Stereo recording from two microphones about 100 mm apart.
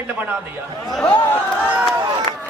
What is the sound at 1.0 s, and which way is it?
Speech, 15° left (ahead or behind).